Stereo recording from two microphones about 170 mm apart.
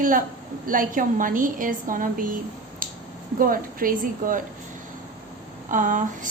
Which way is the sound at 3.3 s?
55° right (ahead or behind).